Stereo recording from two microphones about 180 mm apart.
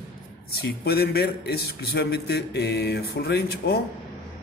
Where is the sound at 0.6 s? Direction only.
60° left (ahead or behind).